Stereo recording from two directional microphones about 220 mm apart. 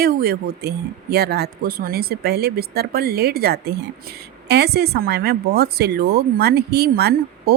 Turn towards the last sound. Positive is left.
turn(degrees=-45)  # may be behind; listen again after turning